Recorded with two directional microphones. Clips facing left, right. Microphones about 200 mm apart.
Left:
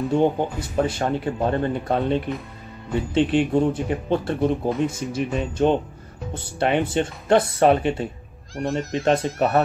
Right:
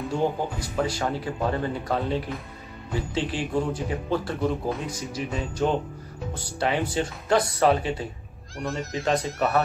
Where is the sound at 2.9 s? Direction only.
60° left (ahead or behind).